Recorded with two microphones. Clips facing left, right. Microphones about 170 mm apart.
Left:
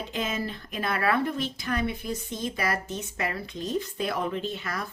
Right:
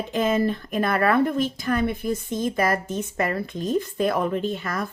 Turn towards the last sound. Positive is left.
turn(degrees=-50)  # may be behind; listen again after turning